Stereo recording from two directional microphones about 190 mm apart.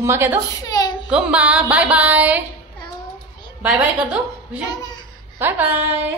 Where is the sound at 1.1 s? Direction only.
5° right (ahead or behind).